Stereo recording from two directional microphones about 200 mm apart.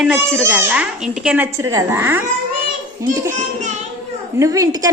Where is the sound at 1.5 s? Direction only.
15° right (ahead or behind).